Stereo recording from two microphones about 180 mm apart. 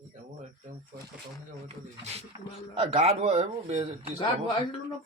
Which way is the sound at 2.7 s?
35° right (ahead or behind).